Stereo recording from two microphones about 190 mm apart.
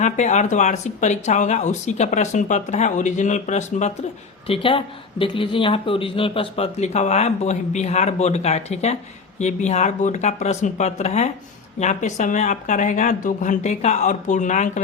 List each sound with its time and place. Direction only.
0.0 s speech: 40° left (ahead or behind)